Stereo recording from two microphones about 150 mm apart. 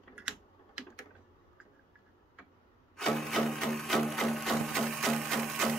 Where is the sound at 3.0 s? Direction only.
Centre (ahead or behind).